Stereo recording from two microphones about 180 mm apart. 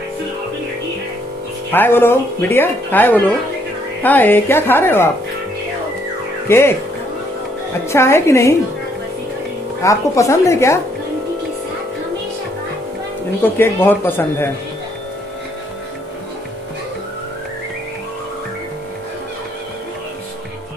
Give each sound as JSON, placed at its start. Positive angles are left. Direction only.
{"t": 1.7, "sound": "speech", "side_deg": 10}
{"t": 6.4, "sound": "speech", "side_deg": 15}
{"t": 7.9, "sound": "speech", "side_deg": 15}
{"t": 9.8, "sound": "speech", "side_deg": 15}
{"t": 13.6, "sound": "speech", "side_deg": 10}